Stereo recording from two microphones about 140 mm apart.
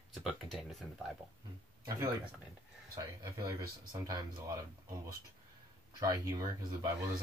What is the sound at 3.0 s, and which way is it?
Speech, 25° right (ahead or behind).